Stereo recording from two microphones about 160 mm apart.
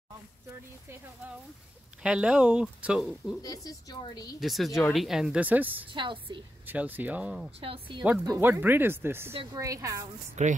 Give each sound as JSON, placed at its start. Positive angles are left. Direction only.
{"t": 2.0, "sound": "speech", "side_deg": -5}
{"t": 3.4, "sound": "speech", "side_deg": 25}
{"t": 4.4, "sound": "speech", "side_deg": 0}
{"t": 5.9, "sound": "a woman's voice", "side_deg": -30}
{"t": 6.7, "sound": "speech", "side_deg": -10}
{"t": 7.6, "sound": "a woman's voice", "side_deg": -35}
{"t": 8.4, "sound": "speech", "side_deg": -15}
{"t": 9.3, "sound": "a woman's voice", "side_deg": -30}
{"t": 9.6, "sound": "a woman's voice", "side_deg": -20}
{"t": 10.4, "sound": "speech", "side_deg": -45}